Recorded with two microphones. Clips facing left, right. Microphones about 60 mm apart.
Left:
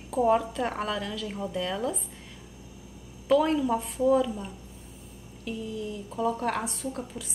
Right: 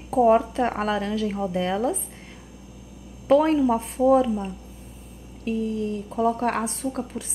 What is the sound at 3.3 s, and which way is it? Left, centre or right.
A woman's voice, right.